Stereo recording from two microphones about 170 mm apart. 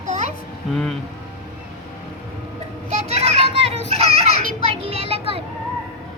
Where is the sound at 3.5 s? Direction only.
90° left.